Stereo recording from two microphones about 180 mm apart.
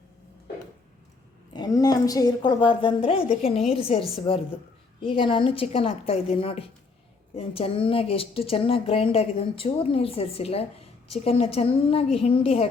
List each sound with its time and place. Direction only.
1.5 s a woman's voice: 20° left (ahead or behind)